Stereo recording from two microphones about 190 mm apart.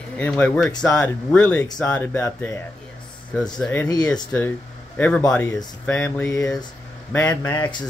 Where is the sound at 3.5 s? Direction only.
5° left (ahead or behind).